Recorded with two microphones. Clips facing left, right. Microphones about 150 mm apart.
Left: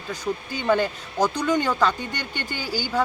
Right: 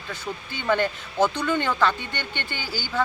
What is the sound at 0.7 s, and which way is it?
Speech, 10° left (ahead or behind).